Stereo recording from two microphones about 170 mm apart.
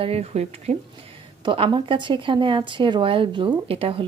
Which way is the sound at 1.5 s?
30° right (ahead or behind).